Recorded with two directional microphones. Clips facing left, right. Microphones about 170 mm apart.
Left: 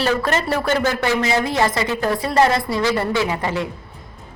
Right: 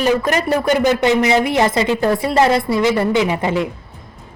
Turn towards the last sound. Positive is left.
turn(degrees=-20)  # may be behind; listen again after turning